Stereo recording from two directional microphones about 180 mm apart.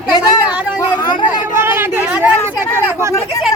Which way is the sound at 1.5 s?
10° right (ahead or behind).